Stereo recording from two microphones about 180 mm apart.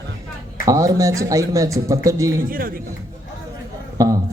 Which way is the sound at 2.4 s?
50° right (ahead or behind).